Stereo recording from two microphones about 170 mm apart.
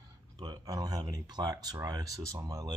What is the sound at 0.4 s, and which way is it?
Speech, 25° right (ahead or behind).